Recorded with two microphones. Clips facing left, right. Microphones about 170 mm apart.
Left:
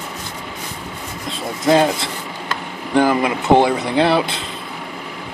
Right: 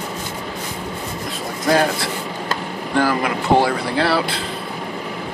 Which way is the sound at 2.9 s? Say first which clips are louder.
Left 3 dB; 20° left (ahead or behind).